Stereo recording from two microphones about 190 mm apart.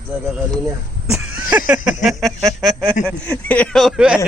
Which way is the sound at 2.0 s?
Centre (ahead or behind).